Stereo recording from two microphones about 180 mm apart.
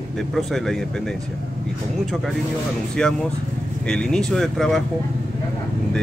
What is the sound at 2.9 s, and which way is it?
Speech, 5° left (ahead or behind).